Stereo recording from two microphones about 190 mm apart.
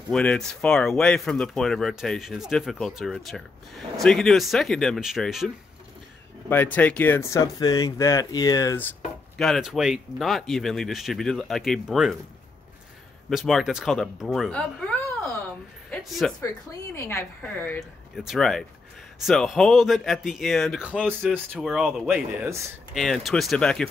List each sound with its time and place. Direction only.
0.1 s speech: 5° left (ahead or behind)
6.5 s speech: 10° left (ahead or behind)
9.4 s speech: centre (ahead or behind)
13.3 s speech: centre (ahead or behind)
16.9 s speech: 15° left (ahead or behind)
18.1 s speech: centre (ahead or behind)